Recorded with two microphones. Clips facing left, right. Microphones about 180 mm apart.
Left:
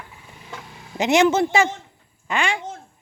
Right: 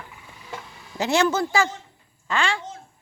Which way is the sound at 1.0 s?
20° left (ahead or behind).